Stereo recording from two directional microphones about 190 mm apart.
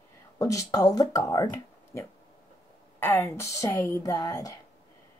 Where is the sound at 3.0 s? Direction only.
15° left (ahead or behind).